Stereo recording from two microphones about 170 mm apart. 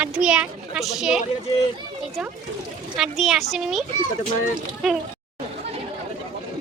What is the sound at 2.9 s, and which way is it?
Speech, centre (ahead or behind).